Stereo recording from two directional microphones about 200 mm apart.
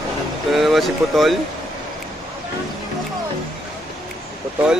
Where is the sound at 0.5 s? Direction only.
Centre (ahead or behind).